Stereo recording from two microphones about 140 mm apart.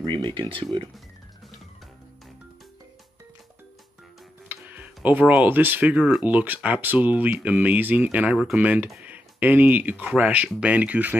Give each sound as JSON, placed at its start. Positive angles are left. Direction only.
{"t": 0.0, "sound": "speech", "side_deg": -35}
{"t": 4.5, "sound": "speech", "side_deg": -10}